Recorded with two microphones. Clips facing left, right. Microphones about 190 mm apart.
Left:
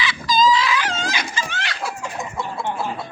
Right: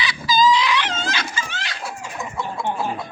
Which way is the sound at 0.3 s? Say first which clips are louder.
Even; centre (ahead or behind).